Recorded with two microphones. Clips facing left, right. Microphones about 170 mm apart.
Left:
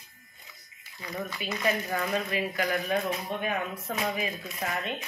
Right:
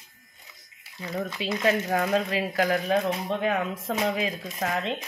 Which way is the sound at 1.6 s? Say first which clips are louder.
Right 5 dB; 85° right.